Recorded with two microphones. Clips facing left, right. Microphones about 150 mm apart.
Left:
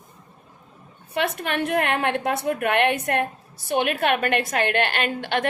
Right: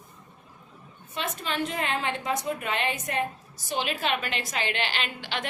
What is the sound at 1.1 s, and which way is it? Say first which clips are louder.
A woman's voice: left 6 dB; 65° left (ahead or behind).